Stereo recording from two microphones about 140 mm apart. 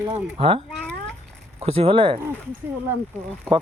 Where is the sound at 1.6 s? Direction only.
45° right (ahead or behind).